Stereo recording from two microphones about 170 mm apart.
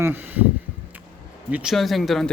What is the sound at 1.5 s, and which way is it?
Speech, centre (ahead or behind).